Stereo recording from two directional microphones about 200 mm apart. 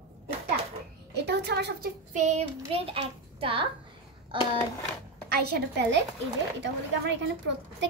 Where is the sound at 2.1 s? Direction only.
35° right (ahead or behind).